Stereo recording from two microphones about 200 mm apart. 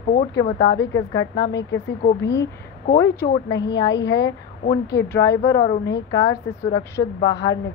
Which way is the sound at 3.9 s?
60° left (ahead or behind).